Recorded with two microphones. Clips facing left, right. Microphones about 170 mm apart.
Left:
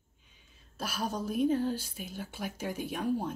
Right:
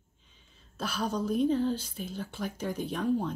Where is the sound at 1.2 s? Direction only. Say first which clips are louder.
Right 1 dB; 5° left (ahead or behind).